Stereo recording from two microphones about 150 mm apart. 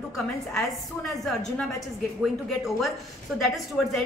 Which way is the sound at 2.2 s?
Centre (ahead or behind).